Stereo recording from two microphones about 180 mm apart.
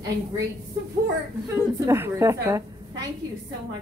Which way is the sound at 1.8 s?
15° right (ahead or behind).